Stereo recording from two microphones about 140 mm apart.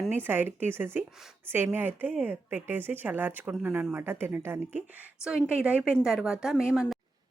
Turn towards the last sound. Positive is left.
turn(degrees=-5)  # may be behind; listen again after turning